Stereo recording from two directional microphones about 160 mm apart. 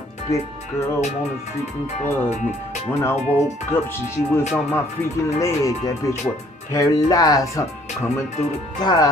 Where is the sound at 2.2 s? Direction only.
45° left (ahead or behind).